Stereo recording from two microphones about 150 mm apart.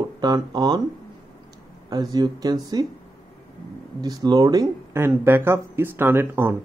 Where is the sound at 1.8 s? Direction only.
25° right (ahead or behind).